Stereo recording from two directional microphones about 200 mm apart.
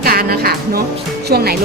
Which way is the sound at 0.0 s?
50° right (ahead or behind).